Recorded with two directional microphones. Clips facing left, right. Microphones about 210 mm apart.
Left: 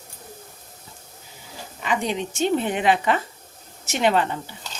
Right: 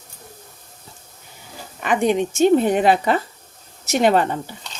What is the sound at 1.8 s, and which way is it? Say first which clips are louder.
Speech: right 7 dB; 55° right (ahead or behind).